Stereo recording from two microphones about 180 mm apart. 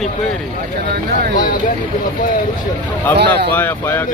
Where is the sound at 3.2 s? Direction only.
65° right (ahead or behind).